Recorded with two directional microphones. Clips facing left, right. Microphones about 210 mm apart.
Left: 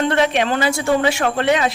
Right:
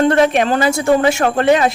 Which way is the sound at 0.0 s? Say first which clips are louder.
Right 5 dB; 45° right (ahead or behind).